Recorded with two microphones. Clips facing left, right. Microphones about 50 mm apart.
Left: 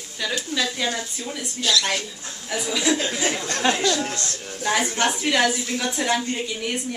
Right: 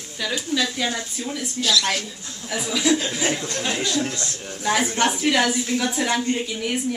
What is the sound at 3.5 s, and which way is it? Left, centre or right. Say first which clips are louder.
Speech: left 4 dB; left.